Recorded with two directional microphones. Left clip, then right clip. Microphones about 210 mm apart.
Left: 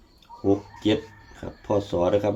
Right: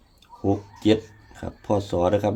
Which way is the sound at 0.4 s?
55° right (ahead or behind).